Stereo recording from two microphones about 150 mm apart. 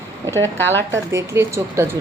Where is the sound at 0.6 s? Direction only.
15° left (ahead or behind).